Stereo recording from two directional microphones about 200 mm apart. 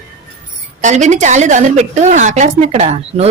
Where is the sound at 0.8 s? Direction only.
35° right (ahead or behind).